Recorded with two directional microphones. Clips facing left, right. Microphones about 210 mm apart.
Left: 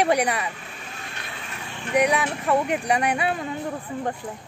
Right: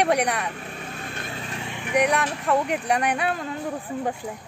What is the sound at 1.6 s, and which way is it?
Vehicle, 15° right (ahead or behind).